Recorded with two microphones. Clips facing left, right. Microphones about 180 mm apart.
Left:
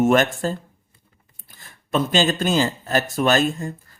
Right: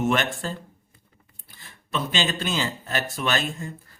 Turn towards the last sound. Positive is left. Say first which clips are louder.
# left 8 dB
turn(degrees=45)  # may be behind; listen again after turning